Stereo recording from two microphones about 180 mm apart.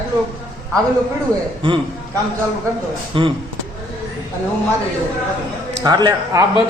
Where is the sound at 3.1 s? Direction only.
30° right (ahead or behind).